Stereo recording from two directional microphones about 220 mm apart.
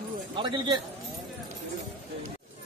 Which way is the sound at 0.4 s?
20° right (ahead or behind).